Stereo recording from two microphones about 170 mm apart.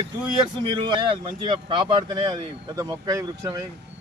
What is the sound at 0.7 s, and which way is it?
Speech, 25° right (ahead or behind).